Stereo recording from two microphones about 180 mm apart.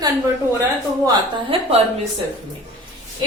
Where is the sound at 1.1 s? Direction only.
30° right (ahead or behind).